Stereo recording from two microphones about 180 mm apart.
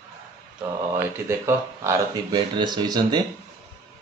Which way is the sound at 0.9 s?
15° right (ahead or behind).